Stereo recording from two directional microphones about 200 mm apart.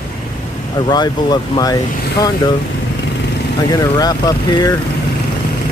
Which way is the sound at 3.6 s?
20° left (ahead or behind).